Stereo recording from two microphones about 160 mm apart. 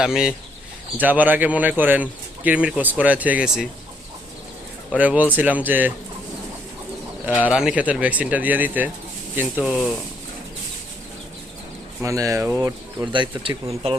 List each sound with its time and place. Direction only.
0.0 s speech: 5° right (ahead or behind)
4.9 s speech: 10° right (ahead or behind)
7.4 s speech: 5° right (ahead or behind)
12.0 s speech: 20° right (ahead or behind)